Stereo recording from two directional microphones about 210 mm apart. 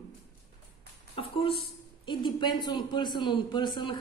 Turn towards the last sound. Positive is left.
turn(degrees=20)  # may be behind; listen again after turning